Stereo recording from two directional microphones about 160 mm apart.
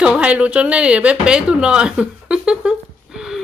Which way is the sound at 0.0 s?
5° right (ahead or behind).